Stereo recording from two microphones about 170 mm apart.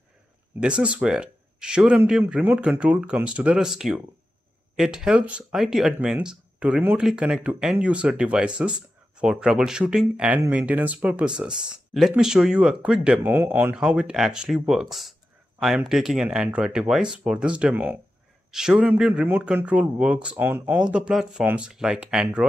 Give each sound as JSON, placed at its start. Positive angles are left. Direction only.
{"t": 0.6, "sound": "speech", "side_deg": -5}